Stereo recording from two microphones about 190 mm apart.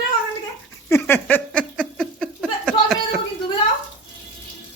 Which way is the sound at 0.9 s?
10° left (ahead or behind).